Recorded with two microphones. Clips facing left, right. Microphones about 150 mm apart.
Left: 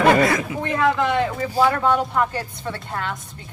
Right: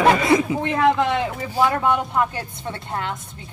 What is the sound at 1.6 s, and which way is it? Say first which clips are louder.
A woman's voice: right 1 dB; 20° right (ahead or behind).